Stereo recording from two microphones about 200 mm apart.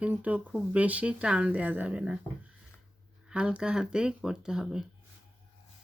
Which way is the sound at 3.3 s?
5° right (ahead or behind).